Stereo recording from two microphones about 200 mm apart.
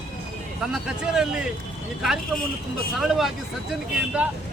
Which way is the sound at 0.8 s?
5° right (ahead or behind).